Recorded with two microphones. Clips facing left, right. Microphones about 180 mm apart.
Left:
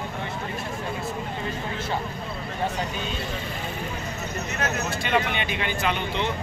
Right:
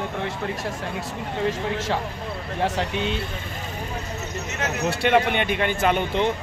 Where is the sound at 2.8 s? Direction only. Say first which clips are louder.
Right 5 dB; 75° right (ahead or behind).